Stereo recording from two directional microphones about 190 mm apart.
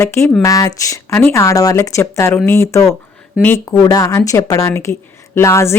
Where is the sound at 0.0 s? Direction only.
15° left (ahead or behind).